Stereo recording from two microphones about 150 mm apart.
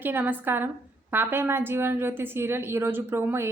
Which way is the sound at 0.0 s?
15° right (ahead or behind).